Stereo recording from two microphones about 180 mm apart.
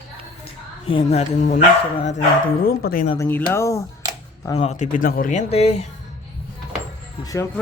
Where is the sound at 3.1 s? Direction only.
15° left (ahead or behind).